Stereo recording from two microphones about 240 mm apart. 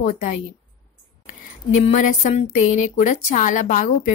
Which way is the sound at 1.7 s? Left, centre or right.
Left.